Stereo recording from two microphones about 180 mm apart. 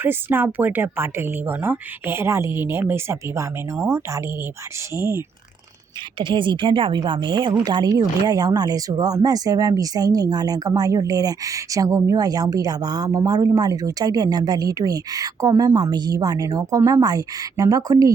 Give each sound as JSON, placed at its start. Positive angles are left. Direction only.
{"t": 0.0, "sound": "speech", "side_deg": -10}
{"t": 6.1, "sound": "speech", "side_deg": -25}